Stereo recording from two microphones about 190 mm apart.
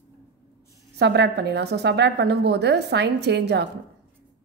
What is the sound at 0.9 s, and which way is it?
A woman's voice, 65° right (ahead or behind).